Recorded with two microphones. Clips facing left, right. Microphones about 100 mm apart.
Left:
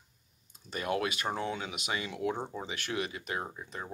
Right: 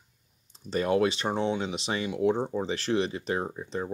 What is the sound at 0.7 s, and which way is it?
Speech, 30° right (ahead or behind).